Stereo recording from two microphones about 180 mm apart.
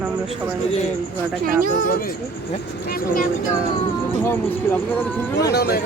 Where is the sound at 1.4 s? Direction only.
50° right (ahead or behind).